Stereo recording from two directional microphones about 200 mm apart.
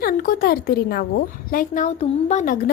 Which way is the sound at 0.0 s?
45° left (ahead or behind).